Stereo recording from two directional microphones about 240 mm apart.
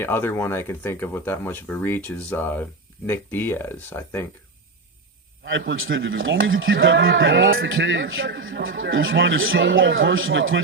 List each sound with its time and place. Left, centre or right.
0.0 s speech: centre
5.5 s speech: right